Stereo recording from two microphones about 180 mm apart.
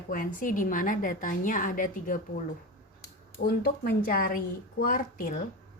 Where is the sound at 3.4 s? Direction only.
60° left (ahead or behind).